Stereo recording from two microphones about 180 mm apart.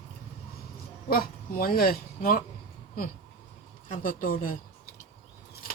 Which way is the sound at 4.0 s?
50° left (ahead or behind).